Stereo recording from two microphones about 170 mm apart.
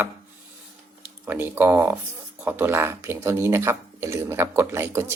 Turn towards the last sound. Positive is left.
turn(degrees=-15)  # may be behind; listen again after turning